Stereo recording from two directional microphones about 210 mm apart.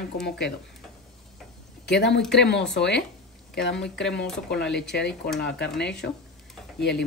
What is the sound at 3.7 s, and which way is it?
Speech, centre (ahead or behind).